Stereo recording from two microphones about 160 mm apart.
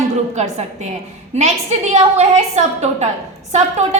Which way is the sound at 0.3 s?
45° right (ahead or behind).